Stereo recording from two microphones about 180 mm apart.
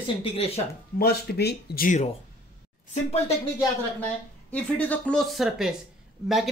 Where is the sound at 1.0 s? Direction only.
60° left (ahead or behind).